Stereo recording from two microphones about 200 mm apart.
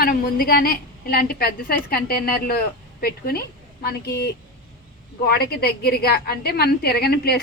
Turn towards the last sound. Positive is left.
turn(degrees=50)  # may be behind; listen again after turning